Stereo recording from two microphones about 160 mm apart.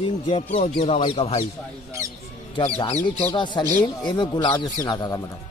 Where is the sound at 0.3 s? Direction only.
35° left (ahead or behind).